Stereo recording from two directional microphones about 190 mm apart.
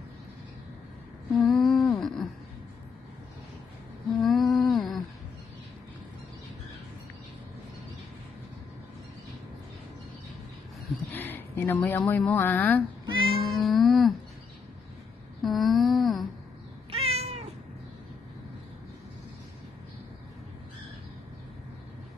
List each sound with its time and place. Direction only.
1.3 s humming: 5° left (ahead or behind)
4.2 s humming: centre (ahead or behind)
11.1 s speech: 10° left (ahead or behind)
13.0 s cat: 25° right (ahead or behind)
13.4 s cat: centre (ahead or behind)
15.4 s a sound: centre (ahead or behind)
16.9 s cat: 30° right (ahead or behind)